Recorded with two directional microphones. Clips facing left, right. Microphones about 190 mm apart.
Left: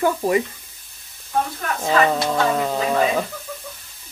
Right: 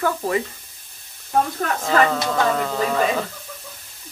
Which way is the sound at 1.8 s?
15° left (ahead or behind).